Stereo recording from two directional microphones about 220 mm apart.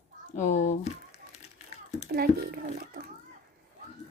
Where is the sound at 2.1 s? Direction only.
45° right (ahead or behind).